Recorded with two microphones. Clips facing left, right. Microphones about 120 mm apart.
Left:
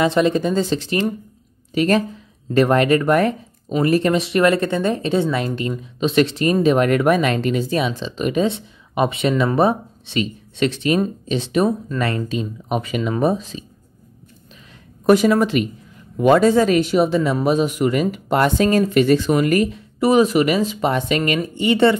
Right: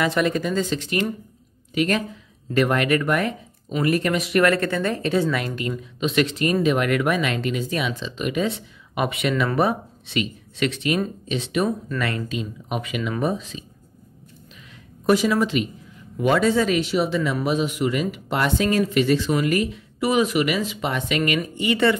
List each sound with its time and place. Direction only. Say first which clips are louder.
0.0 s speech: left 5 dB; 25° left (ahead or behind)
15.0 s speech: left 5 dB; 50° left (ahead or behind); by 21.9 s 30° left (ahead or behind)